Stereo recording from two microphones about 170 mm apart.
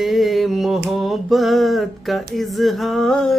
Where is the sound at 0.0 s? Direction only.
Centre (ahead or behind).